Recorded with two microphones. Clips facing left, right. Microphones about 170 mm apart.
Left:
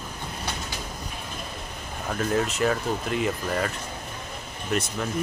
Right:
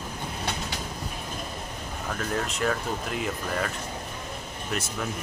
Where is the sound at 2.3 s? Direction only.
5° left (ahead or behind).